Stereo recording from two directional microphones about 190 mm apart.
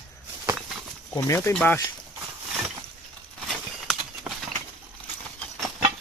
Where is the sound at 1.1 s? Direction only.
15° left (ahead or behind).